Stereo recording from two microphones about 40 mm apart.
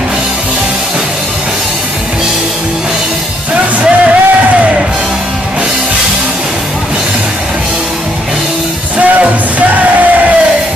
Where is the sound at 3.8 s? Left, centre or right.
Right.